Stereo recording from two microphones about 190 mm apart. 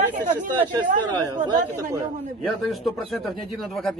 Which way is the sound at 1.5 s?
20° right (ahead or behind).